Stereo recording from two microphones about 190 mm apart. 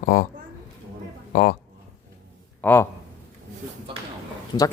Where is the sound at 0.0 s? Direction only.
45° left (ahead or behind).